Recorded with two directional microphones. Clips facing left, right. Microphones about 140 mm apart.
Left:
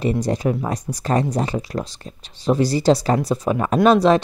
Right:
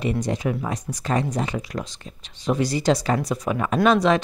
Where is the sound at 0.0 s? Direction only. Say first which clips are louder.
Left 4 dB; 35° left (ahead or behind).